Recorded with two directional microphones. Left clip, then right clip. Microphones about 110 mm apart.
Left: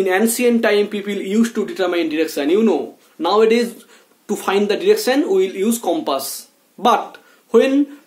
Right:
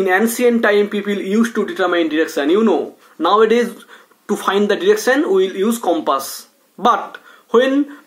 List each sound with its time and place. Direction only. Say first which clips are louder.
0.0 s speech: right 2 dB; 20° left (ahead or behind)
7.5 s speech: even; 15° left (ahead or behind)